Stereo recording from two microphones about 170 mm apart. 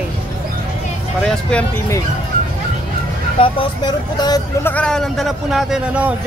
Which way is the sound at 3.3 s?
30° left (ahead or behind).